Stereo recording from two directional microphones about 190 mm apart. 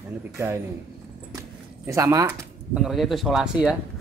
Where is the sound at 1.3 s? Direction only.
15° right (ahead or behind).